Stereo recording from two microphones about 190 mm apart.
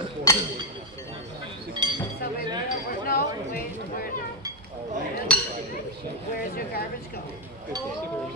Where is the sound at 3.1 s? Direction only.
50° left (ahead or behind).